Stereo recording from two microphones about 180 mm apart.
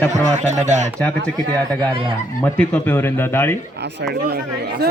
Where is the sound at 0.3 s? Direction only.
40° right (ahead or behind).